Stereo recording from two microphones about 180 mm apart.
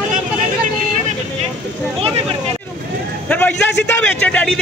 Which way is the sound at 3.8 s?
10° left (ahead or behind).